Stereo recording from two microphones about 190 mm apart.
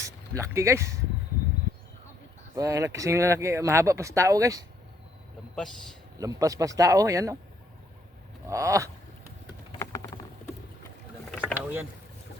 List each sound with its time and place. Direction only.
0.0 s speech: 15° right (ahead or behind)
2.6 s speech: 15° right (ahead or behind)
6.1 s speech: 20° right (ahead or behind)
8.4 s speech: 15° right (ahead or behind)
9.7 s typing: 15° left (ahead or behind)
11.3 s mechanisms: 5° left (ahead or behind)